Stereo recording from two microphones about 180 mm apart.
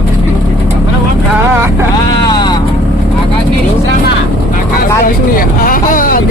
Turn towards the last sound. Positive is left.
turn(degrees=50)  # may be behind; listen again after turning